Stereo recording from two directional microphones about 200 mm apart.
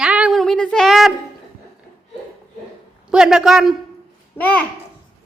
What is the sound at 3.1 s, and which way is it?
A man's voice, 5° right (ahead or behind).